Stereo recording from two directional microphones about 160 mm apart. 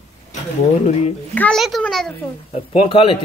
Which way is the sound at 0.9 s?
40° left (ahead or behind).